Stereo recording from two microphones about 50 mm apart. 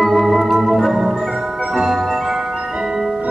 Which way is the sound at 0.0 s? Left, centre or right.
Centre.